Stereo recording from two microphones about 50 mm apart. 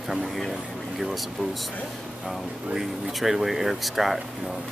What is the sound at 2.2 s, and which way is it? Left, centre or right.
Speech, centre.